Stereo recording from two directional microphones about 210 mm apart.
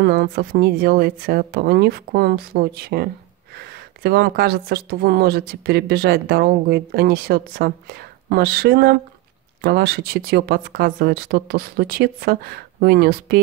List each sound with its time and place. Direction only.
0.0 s a woman's voice: 45° right (ahead or behind)